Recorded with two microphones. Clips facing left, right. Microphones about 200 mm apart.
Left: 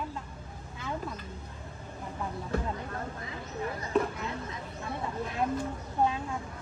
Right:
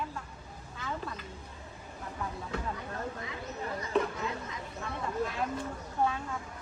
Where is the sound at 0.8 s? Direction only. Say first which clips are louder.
Left 2 dB; 10° left (ahead or behind).